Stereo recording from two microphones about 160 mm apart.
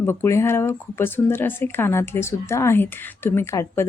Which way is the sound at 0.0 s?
15° left (ahead or behind).